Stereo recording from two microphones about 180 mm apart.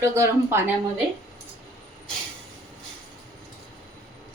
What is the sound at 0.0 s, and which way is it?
Speech, 15° right (ahead or behind).